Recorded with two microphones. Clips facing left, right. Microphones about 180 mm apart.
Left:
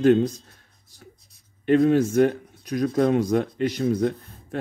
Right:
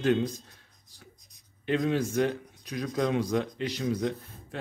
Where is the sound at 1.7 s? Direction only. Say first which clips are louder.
Left 9 dB; 50° left (ahead or behind).